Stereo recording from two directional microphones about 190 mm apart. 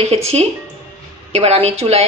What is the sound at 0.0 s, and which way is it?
A woman's voice, 35° right (ahead or behind).